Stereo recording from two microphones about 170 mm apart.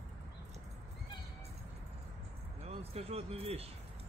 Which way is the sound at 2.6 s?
35° right (ahead or behind).